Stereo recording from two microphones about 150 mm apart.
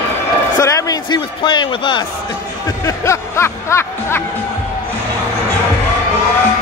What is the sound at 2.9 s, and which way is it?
Music, 20° left (ahead or behind).